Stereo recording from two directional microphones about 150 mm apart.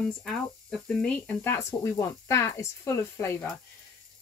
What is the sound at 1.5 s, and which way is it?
Speech, 20° left (ahead or behind).